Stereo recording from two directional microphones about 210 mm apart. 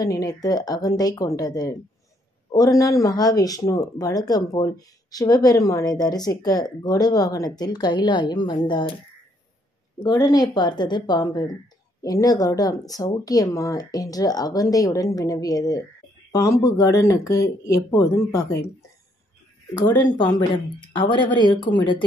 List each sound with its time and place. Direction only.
0.0 s a woman's voice: 15° left (ahead or behind)
10.0 s a woman's voice: 20° left (ahead or behind)
19.9 s a woman's voice: 20° left (ahead or behind)